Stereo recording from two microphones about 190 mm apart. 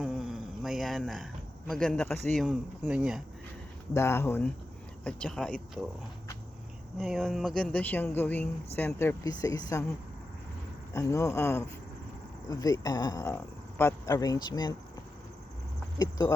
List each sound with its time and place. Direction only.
0.0 s a sound: centre (ahead or behind)
1.7 s speech: 5° left (ahead or behind)
3.9 s speech: 15° left (ahead or behind)
7.0 s speech: centre (ahead or behind); by 9.8 s 20° left (ahead or behind)
10.9 s speech: 15° left (ahead or behind)
16.0 s speech: 20° left (ahead or behind)